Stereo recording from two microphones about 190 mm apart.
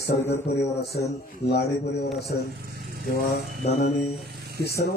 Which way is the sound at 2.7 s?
55° right (ahead or behind).